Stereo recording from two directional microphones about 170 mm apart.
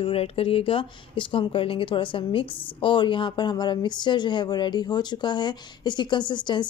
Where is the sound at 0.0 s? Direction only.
35° left (ahead or behind).